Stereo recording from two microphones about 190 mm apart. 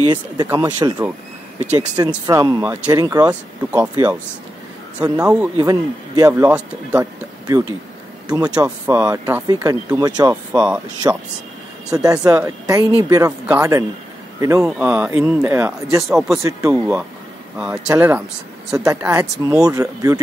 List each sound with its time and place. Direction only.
0.1 s speech: 20° right (ahead or behind)
3.3 s speech: 10° right (ahead or behind)
5.2 s speech: 5° right (ahead or behind)
5.6 s speech: 20° right (ahead or behind)
8.9 s speech: 15° right (ahead or behind)
10.5 s speech: 10° right (ahead or behind)
16.4 s speech: 15° right (ahead or behind)